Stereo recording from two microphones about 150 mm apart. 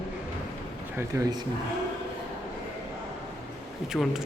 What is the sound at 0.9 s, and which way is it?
Speech, 25° right (ahead or behind).